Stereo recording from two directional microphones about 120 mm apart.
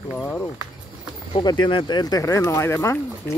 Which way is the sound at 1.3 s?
40° left (ahead or behind).